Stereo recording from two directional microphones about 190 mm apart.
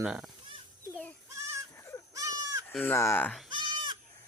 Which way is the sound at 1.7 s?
15° left (ahead or behind).